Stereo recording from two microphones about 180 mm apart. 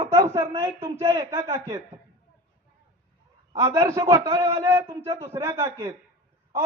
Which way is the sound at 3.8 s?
15° right (ahead or behind).